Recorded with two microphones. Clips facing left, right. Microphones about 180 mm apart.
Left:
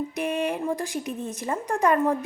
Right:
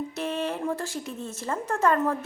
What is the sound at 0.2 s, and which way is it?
A woman's voice, 15° left (ahead or behind).